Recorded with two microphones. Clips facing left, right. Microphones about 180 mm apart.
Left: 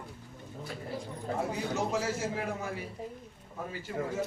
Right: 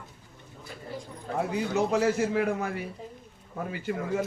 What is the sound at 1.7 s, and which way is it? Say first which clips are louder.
Speech: right 9 dB; 60° right (ahead or behind).